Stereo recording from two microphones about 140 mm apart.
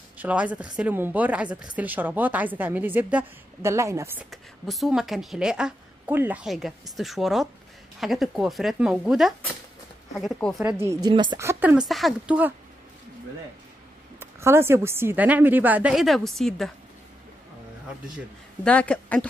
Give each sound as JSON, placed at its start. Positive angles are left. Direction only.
{"t": 0.2, "sound": "a woman's voice", "side_deg": -10}
{"t": 4.2, "sound": "a woman's voice", "side_deg": 0}
{"t": 6.4, "sound": "a woman's voice", "side_deg": 0}
{"t": 10.8, "sound": "speech", "side_deg": -20}
{"t": 11.1, "sound": "a woman's voice", "side_deg": -30}
{"t": 11.3, "sound": "speech", "side_deg": -20}
{"t": 11.9, "sound": "a woman's voice", "side_deg": 0}
{"t": 14.2, "sound": "a woman's voice", "side_deg": -20}
{"t": 18.6, "sound": "speech", "side_deg": 10}